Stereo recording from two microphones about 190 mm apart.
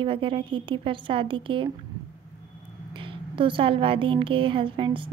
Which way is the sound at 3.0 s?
25° right (ahead or behind).